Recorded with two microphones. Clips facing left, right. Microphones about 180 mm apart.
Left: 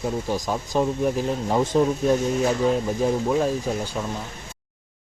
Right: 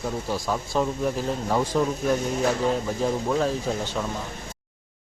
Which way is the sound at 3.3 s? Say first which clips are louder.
Left 2 dB; 15° left (ahead or behind).